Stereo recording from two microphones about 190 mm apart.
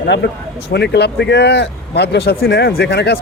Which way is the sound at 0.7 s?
60° left (ahead or behind).